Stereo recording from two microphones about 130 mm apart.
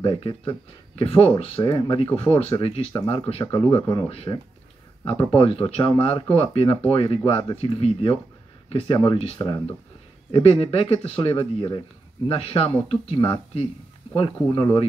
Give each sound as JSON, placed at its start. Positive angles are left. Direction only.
{"t": 0.0, "sound": "speech", "side_deg": 40}
{"t": 1.6, "sound": "speech", "side_deg": 40}